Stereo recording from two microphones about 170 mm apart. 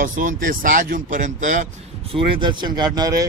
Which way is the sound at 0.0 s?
50° right (ahead or behind).